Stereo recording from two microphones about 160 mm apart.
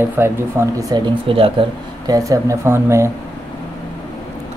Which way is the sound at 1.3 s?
35° right (ahead or behind).